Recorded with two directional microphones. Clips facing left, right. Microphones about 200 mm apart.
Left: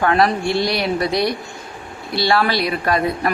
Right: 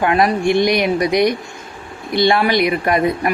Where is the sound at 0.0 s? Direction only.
15° right (ahead or behind).